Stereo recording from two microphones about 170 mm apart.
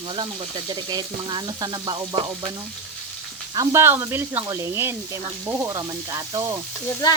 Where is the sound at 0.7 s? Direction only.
25° right (ahead or behind).